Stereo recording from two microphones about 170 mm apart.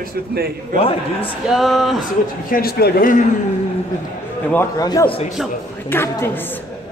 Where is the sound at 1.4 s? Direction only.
Centre (ahead or behind).